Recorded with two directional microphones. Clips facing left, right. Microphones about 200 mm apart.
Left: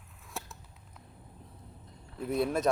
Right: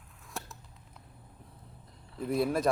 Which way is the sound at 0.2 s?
Centre (ahead or behind).